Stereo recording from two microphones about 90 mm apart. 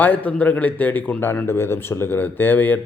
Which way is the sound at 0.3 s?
15° left (ahead or behind).